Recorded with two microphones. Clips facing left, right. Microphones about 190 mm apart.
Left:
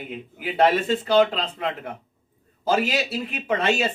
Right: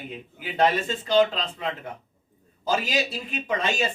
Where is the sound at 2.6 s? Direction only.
60° left (ahead or behind).